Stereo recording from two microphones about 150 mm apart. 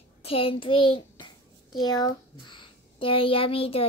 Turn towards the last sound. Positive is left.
turn(degrees=40)  # may be behind; listen again after turning